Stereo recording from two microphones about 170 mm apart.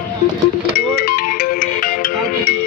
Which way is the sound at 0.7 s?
60° left (ahead or behind).